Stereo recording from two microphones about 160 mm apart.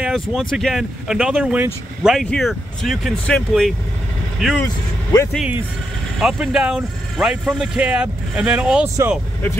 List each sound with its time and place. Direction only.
0.0 s speech: centre (ahead or behind)
6.1 s speech: 5° right (ahead or behind)
8.8 s speech: 15° right (ahead or behind)